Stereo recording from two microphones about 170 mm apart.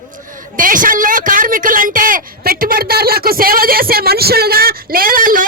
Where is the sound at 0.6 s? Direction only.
55° right (ahead or behind).